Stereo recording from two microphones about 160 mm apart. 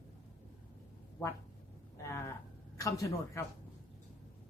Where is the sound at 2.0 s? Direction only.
15° left (ahead or behind).